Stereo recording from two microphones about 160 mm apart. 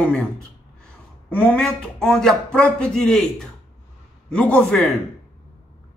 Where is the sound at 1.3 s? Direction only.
10° left (ahead or behind).